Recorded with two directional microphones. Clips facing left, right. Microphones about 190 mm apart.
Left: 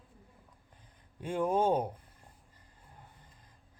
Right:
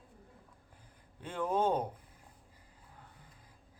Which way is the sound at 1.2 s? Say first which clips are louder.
Left 3 dB; 10° left (ahead or behind).